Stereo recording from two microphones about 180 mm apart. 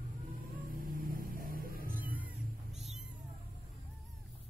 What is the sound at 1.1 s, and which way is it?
Music, 50° right (ahead or behind).